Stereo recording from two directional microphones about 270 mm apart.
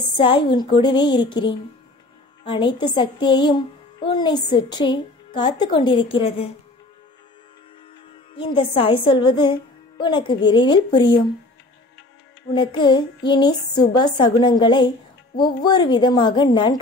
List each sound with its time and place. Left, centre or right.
0.2 s speech: centre
8.4 s speech: centre
12.5 s speech: centre